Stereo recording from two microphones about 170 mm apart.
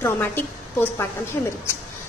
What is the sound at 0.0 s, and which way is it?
A woman's voice, 10° left (ahead or behind).